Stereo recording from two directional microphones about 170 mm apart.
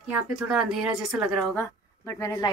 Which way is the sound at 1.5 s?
15° left (ahead or behind).